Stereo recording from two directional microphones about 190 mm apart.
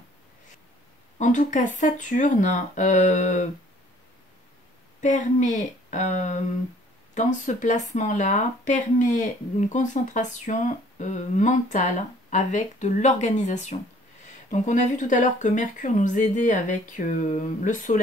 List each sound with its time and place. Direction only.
1.1 s speech: 40° left (ahead or behind)
5.0 s speech: 40° left (ahead or behind)